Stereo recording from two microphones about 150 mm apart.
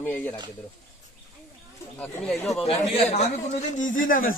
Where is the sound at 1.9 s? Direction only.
5° left (ahead or behind).